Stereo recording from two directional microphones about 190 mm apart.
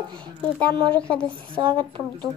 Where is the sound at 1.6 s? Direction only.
25° right (ahead or behind).